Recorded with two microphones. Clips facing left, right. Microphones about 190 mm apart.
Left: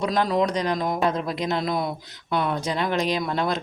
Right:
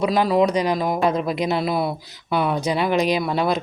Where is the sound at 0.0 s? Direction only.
5° right (ahead or behind).